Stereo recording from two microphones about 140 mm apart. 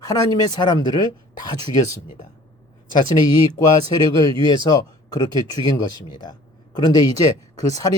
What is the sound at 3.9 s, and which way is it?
Speech, 30° left (ahead or behind).